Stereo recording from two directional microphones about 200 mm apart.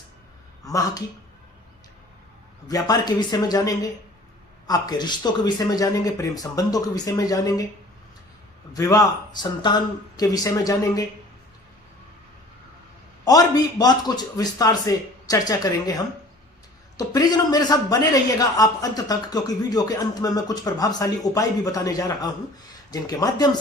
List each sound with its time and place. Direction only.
0.6 s speech: 15° left (ahead or behind)
2.6 s a man's voice: 20° left (ahead or behind)
8.7 s a man's voice: 15° left (ahead or behind)
13.2 s a man's voice: 20° left (ahead or behind)
17.2 s a man's voice: 20° left (ahead or behind)